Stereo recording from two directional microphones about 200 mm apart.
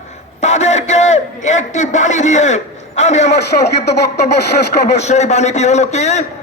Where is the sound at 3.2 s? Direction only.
55° left (ahead or behind).